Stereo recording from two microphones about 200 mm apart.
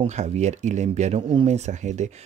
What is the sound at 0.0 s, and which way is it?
Speech, 35° right (ahead or behind).